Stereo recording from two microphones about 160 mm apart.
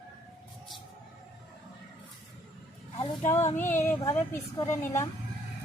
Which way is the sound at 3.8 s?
15° left (ahead or behind).